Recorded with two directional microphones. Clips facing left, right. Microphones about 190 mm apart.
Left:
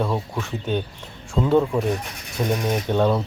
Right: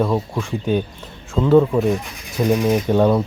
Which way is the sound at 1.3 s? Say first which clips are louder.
Right 5 dB; centre (ahead or behind).